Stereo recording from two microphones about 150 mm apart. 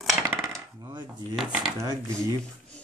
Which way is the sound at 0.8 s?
25° right (ahead or behind).